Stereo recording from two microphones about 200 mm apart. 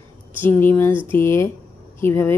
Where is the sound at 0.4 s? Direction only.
10° left (ahead or behind).